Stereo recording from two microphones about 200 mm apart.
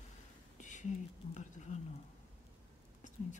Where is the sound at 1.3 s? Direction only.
35° left (ahead or behind).